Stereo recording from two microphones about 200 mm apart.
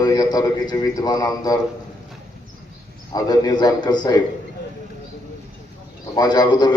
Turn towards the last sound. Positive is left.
turn(degrees=20)  # may be behind; listen again after turning